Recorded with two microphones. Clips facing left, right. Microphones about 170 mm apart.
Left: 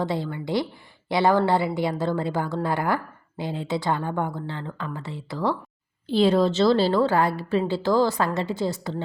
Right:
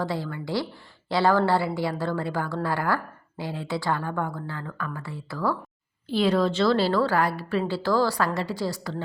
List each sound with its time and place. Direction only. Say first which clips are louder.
0.0 s a woman's voice: left 2 dB; 20° left (ahead or behind)